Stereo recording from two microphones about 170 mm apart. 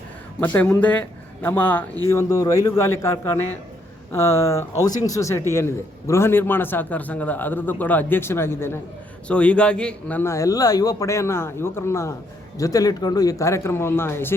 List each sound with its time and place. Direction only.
0.3 s a man's voice: 10° left (ahead or behind)